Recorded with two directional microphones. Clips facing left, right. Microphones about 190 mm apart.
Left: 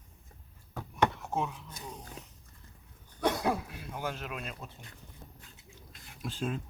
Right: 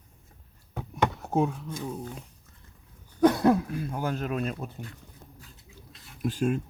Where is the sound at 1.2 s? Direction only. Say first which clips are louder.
Right 8 dB; 35° right (ahead or behind).